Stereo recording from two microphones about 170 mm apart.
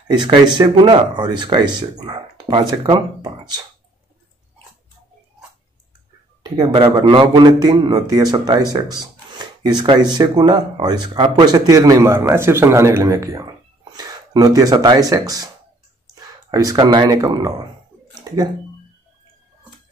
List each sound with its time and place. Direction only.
0.1 s speech: 25° right (ahead or behind)
6.5 s speech: 25° right (ahead or behind)